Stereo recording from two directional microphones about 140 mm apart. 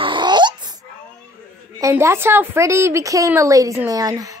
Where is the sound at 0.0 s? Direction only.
35° right (ahead or behind).